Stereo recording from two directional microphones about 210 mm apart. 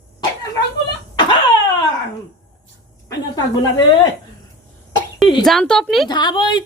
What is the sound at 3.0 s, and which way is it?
Speech, 20° left (ahead or behind).